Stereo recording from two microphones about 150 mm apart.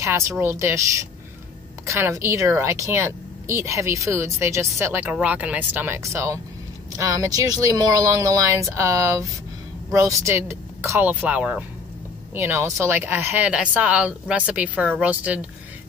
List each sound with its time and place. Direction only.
0.0 s a woman's voice: 20° right (ahead or behind)